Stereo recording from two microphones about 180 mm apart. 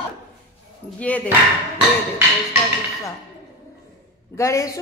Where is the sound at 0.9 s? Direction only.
10° left (ahead or behind).